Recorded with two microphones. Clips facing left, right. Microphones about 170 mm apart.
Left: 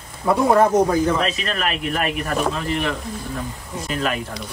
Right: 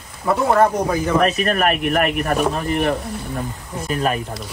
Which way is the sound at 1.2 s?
50° right (ahead or behind).